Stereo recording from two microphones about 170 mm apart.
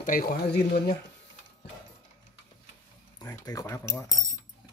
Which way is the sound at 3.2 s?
20° left (ahead or behind).